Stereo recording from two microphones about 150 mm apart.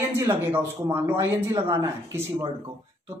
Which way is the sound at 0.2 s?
15° right (ahead or behind).